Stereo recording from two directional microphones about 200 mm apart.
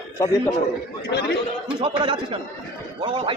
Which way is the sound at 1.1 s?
55° left (ahead or behind).